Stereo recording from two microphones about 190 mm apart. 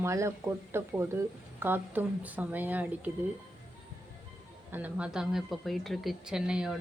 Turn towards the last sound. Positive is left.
turn(degrees=-5)  # may be behind; listen again after turning